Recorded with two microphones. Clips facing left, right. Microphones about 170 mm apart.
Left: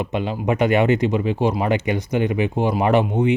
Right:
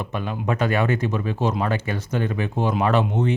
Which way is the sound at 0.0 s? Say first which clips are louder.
Left 4 dB; 20° left (ahead or behind).